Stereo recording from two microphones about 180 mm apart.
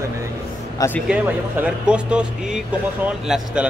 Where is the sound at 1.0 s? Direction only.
10° right (ahead or behind).